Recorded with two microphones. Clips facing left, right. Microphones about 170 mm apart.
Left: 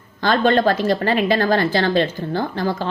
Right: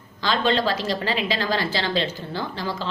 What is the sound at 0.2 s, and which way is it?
A woman's voice, 50° left (ahead or behind).